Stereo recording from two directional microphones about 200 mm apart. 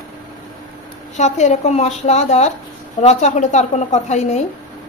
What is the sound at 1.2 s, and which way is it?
A woman's voice, 35° left (ahead or behind).